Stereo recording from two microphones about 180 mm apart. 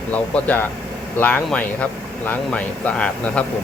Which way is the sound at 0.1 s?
10° left (ahead or behind).